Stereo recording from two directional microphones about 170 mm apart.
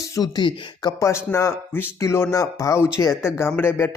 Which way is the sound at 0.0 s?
20° left (ahead or behind).